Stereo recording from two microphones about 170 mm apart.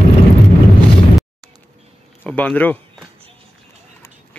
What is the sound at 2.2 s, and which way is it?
Speech, 10° left (ahead or behind).